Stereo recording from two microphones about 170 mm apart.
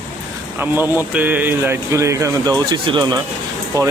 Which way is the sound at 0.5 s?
10° right (ahead or behind).